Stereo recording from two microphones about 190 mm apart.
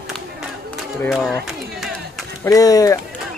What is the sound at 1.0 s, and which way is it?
Speech, centre (ahead or behind).